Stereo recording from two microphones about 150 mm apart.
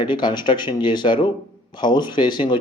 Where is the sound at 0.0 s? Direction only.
30° left (ahead or behind).